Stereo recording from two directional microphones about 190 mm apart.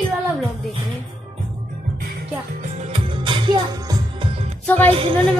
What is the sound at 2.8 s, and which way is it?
Music, 30° right (ahead or behind).